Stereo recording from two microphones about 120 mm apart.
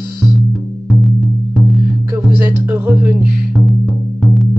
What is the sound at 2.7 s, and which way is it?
Music, 15° right (ahead or behind).